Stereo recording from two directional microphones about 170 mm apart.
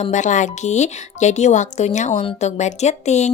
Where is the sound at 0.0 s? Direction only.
45° left (ahead or behind).